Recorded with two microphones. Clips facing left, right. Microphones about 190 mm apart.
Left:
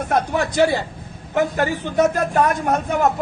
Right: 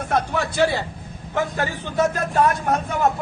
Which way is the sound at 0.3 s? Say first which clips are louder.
Left 4 dB; 15° left (ahead or behind).